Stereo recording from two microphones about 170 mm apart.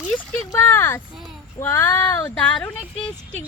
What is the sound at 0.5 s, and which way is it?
Speech, 15° left (ahead or behind).